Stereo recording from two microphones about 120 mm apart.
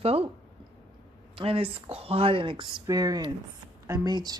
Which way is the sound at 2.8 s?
30° right (ahead or behind).